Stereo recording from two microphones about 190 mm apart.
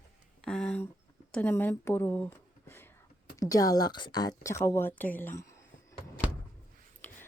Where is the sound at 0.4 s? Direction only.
5° left (ahead or behind).